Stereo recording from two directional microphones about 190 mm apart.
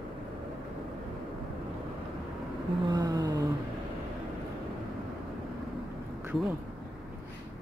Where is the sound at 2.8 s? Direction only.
20° right (ahead or behind).